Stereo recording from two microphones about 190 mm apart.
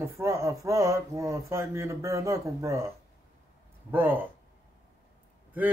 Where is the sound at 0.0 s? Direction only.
15° right (ahead or behind).